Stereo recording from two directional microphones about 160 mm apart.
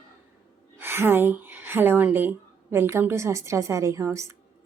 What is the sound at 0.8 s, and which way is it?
A woman's voice, 15° right (ahead or behind).